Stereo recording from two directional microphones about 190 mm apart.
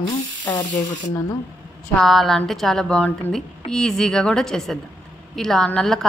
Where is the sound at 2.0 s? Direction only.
Centre (ahead or behind).